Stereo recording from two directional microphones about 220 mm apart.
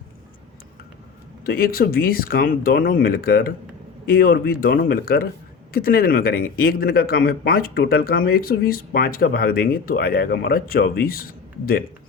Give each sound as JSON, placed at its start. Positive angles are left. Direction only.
{"t": 1.5, "sound": "speech", "side_deg": 45}